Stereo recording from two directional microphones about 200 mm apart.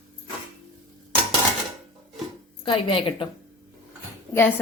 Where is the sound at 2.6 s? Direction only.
25° left (ahead or behind).